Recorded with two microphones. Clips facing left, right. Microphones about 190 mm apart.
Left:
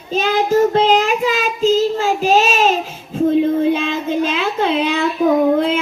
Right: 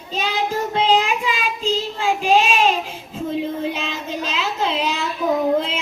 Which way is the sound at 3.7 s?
55° left (ahead or behind).